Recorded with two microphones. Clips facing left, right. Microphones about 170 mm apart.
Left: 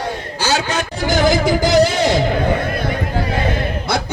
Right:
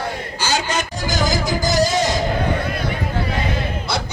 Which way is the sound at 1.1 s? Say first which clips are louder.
Left 7 dB; 60° left (ahead or behind).